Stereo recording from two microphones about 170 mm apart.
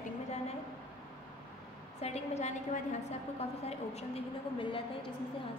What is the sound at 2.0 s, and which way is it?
Speech, 40° left (ahead or behind).